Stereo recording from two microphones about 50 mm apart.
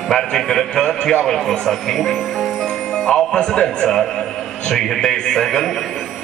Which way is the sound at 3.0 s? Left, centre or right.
Centre.